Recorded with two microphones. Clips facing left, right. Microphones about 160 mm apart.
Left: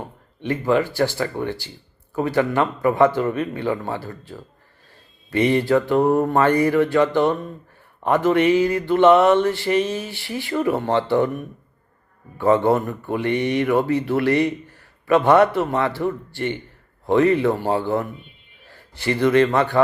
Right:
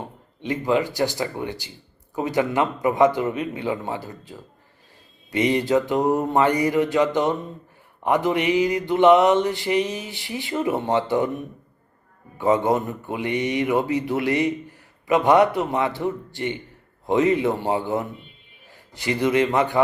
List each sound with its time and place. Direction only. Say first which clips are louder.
0.4 s a man's voice: left 2 dB; 15° right (ahead or behind)